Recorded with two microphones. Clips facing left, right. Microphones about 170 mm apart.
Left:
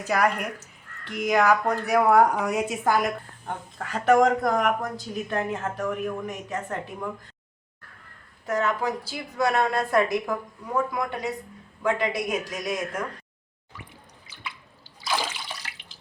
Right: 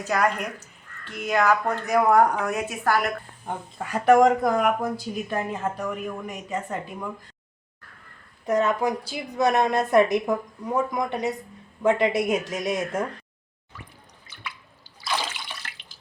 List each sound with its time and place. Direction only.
0.0 s speech: 10° left (ahead or behind)
3.4 s speech: 10° right (ahead or behind)
5.7 s speech: centre (ahead or behind)
8.4 s a woman's voice: 20° right (ahead or behind)